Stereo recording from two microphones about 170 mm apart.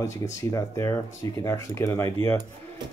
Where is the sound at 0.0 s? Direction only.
20° left (ahead or behind).